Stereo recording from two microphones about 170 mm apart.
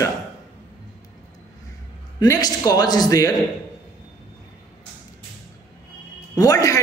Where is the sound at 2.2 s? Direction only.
25° left (ahead or behind).